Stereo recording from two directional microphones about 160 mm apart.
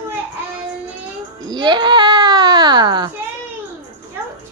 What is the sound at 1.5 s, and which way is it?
Baby cry, 30° right (ahead or behind).